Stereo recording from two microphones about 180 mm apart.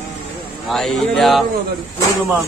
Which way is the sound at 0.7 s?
Centre (ahead or behind).